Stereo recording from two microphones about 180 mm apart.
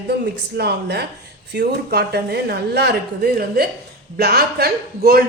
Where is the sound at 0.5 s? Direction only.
65° right (ahead or behind).